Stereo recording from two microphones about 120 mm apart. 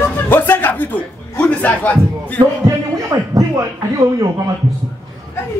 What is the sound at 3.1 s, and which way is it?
Speech, 35° right (ahead or behind).